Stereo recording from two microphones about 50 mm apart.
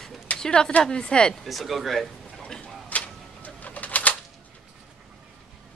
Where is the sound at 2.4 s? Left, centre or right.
Centre.